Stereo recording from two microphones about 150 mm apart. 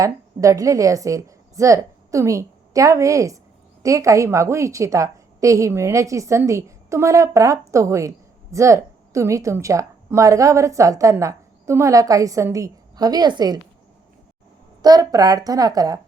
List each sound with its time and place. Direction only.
0.0 s a woman's voice: 20° right (ahead or behind)
14.8 s a woman's voice: 25° right (ahead or behind)